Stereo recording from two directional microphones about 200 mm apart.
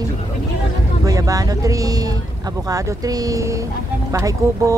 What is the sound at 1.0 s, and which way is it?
Speech, 15° right (ahead or behind).